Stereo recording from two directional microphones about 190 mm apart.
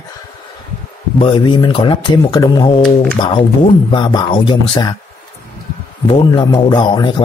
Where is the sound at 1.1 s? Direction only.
25° left (ahead or behind).